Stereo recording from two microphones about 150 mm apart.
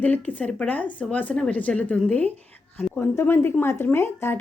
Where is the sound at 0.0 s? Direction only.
10° left (ahead or behind).